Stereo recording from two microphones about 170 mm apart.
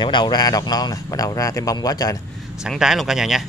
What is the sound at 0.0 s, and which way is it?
A man's voice, 25° left (ahead or behind).